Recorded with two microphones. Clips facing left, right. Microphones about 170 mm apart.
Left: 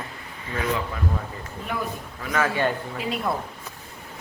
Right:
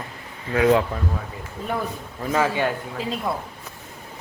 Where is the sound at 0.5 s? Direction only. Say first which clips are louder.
Right 9 dB; 75° right (ahead or behind).